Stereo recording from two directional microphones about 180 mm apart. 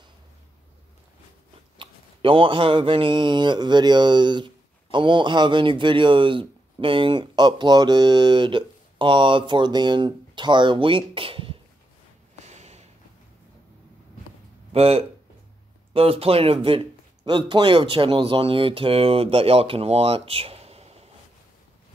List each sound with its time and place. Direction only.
1.8 s speech: 30° right (ahead or behind)
12.4 s a sound: 40° right (ahead or behind)
14.7 s speech: 35° right (ahead or behind)